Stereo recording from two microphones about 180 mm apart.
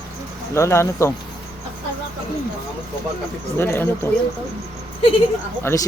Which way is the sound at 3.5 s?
10° left (ahead or behind).